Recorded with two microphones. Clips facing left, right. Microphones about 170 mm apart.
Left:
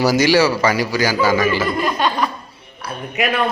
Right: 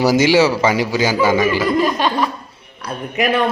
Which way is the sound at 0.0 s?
20° right (ahead or behind).